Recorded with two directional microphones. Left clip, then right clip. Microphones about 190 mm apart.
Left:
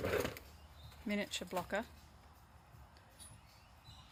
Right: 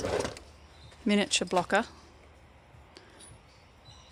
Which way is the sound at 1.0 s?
50° right (ahead or behind).